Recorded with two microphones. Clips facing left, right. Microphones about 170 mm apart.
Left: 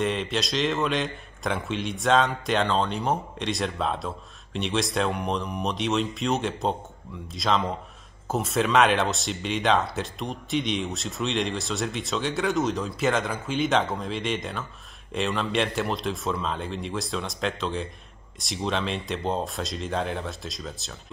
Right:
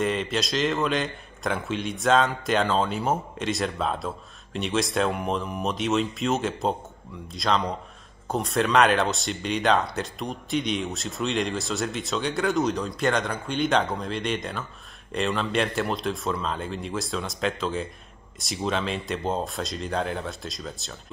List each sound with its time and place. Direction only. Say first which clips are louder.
0.0 s a man's voice: right 1 dB; centre (ahead or behind)